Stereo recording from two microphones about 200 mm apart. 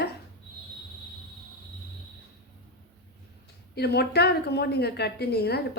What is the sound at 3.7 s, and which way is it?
A woman's voice, 55° left (ahead or behind).